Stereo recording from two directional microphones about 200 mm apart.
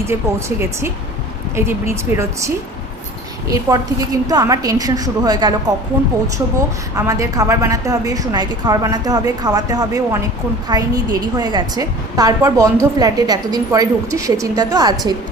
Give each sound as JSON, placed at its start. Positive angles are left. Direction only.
{"t": 0.0, "sound": "a woman's voice", "side_deg": -15}
{"t": 3.5, "sound": "a woman's voice", "side_deg": -20}
{"t": 6.9, "sound": "a woman's voice", "side_deg": -15}